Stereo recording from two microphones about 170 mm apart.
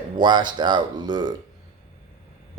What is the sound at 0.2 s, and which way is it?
Speech, 25° right (ahead or behind).